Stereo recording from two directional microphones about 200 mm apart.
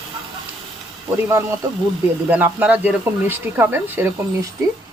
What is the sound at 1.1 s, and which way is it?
Speech, 15° right (ahead or behind).